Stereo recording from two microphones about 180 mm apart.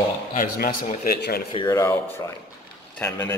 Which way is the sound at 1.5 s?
25° left (ahead or behind).